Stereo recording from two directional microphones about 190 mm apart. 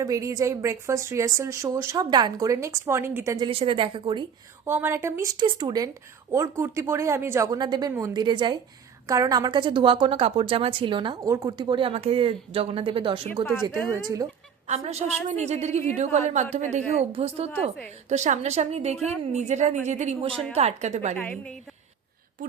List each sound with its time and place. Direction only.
0.0 s a woman's voice: 15° right (ahead or behind)
4.6 s a woman's voice: 10° right (ahead or behind); by 13.4 s 30° right (ahead or behind)
14.7 s a woman's voice: 35° right (ahead or behind)
20.3 s a woman's voice: 5° left (ahead or behind)
20.6 s a woman's voice: 35° right (ahead or behind)
21.2 s a woman's voice: 5° left (ahead or behind)